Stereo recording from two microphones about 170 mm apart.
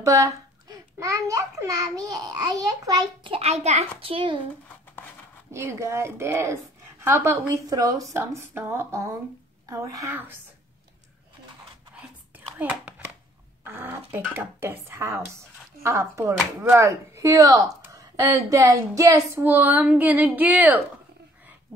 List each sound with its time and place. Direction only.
0.0 s a child's voice: 20° right (ahead or behind)
3.3 s a child's voice: 40° right (ahead or behind)
4.0 s a child's voice: 30° right (ahead or behind)
5.5 s speech: 15° right (ahead or behind)
12.5 s a sound: 10° right (ahead or behind)
13.7 s speech: 15° right (ahead or behind)